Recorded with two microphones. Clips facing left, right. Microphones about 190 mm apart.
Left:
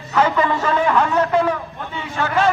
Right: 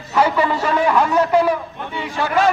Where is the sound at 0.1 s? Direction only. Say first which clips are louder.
Right 1 dB; 10° right (ahead or behind).